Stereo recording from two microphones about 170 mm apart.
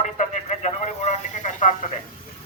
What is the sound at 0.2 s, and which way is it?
Radio, 40° left (ahead or behind).